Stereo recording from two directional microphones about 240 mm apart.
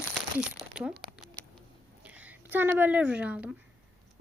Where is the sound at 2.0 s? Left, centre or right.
Centre.